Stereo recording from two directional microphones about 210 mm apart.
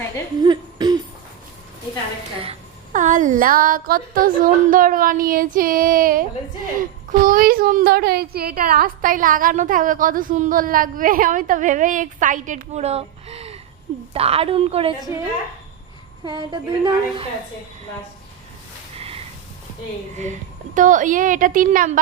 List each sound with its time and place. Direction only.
0.4 s hoot: 20° right (ahead or behind)
2.4 s a woman's voice: 30° right (ahead or behind)
16.2 s speech: 20° right (ahead or behind)
18.9 s a sound: 25° right (ahead or behind)
20.7 s a woman's voice: 40° right (ahead or behind)